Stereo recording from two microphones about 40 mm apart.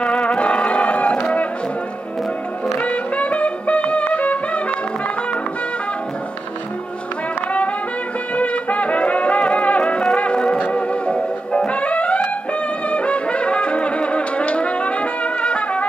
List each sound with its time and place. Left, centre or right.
0.0 s music: left
2.8 s music: left
8.4 s music: left
12.9 s brass instrument: left